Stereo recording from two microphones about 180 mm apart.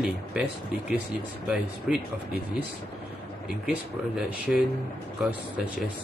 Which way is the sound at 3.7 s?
10° right (ahead or behind).